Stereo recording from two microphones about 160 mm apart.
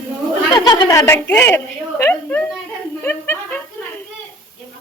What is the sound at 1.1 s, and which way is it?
Speech, 10° left (ahead or behind).